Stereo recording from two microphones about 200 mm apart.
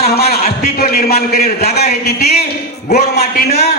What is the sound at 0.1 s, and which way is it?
A man's voice, 50° left (ahead or behind).